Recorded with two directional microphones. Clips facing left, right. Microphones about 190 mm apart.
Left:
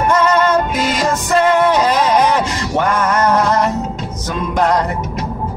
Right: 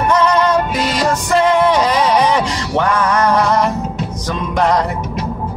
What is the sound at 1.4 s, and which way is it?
Music, 5° left (ahead or behind).